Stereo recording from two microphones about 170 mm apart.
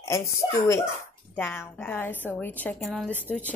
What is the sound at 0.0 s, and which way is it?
A woman's voice, 20° left (ahead or behind).